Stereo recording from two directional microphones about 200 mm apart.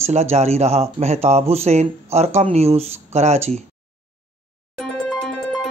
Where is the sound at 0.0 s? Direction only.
35° right (ahead or behind).